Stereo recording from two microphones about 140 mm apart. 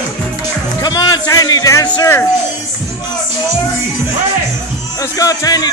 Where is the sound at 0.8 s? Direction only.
30° left (ahead or behind).